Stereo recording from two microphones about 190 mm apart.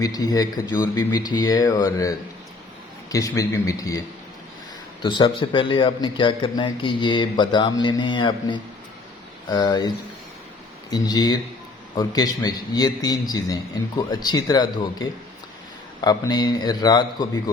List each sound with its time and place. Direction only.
0.0 s a man's voice: 20° left (ahead or behind)
5.0 s a man's voice: 25° left (ahead or behind)
10.9 s a man's voice: 20° left (ahead or behind)